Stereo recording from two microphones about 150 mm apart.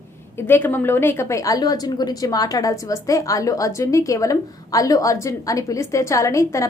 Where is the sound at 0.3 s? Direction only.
15° left (ahead or behind).